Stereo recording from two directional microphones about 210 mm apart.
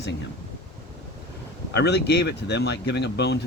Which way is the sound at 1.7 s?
55° left (ahead or behind).